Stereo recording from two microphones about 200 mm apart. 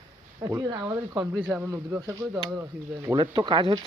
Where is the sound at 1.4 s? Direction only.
5° right (ahead or behind).